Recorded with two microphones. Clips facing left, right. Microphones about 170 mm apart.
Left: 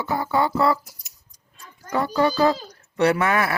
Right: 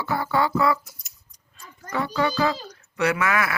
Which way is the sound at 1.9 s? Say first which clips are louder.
Left 4 dB; 40° left (ahead or behind).